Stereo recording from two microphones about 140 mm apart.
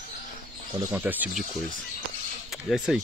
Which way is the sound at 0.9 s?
10° right (ahead or behind).